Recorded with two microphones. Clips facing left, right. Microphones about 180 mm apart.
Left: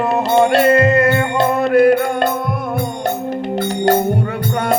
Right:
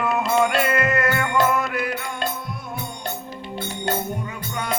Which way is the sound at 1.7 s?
55° left (ahead or behind).